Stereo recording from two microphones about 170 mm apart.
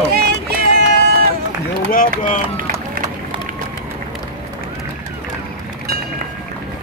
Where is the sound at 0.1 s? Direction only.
65° right (ahead or behind).